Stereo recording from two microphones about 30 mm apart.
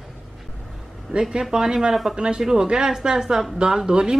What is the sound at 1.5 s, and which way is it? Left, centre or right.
A woman's voice, right.